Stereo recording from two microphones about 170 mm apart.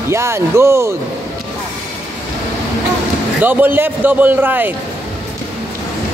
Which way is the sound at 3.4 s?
10° right (ahead or behind).